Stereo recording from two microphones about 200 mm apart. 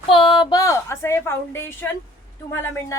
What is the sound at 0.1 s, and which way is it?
A woman's voice, 25° left (ahead or behind).